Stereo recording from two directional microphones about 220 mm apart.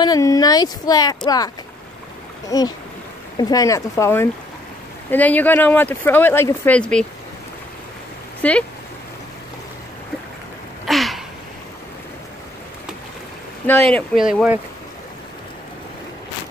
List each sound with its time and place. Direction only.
0.0 s speech: 15° left (ahead or behind)
8.4 s speech: 5° left (ahead or behind)
10.9 s a sound: centre (ahead or behind)
13.7 s speech: 5° left (ahead or behind)
14.2 s speech: 5° right (ahead or behind)